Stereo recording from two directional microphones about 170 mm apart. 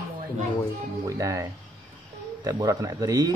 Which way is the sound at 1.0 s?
20° right (ahead or behind).